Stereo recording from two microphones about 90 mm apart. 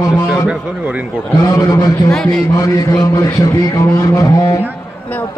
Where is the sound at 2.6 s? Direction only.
40° left (ahead or behind).